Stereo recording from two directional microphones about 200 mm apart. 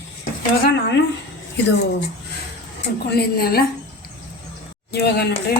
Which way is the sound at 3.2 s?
50° left (ahead or behind).